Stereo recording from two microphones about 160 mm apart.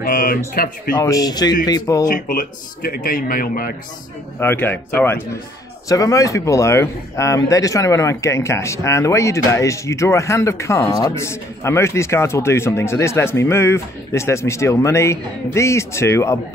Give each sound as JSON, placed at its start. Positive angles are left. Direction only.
{"t": 0.0, "sound": "speech", "side_deg": 60}
{"t": 0.9, "sound": "speech", "side_deg": 25}
{"t": 2.0, "sound": "speech", "side_deg": 60}
{"t": 4.4, "sound": "a man's voice", "side_deg": 15}